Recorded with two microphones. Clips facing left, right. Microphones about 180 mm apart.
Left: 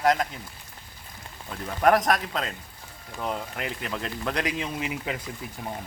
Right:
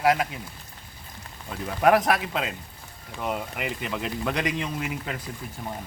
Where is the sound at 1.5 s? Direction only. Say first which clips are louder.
Right 1 dB; 5° right (ahead or behind).